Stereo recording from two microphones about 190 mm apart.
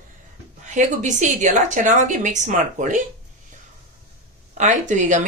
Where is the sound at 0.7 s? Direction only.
40° right (ahead or behind).